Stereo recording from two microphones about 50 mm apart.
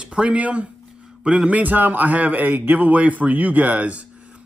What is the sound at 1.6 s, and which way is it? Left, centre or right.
Speech, right.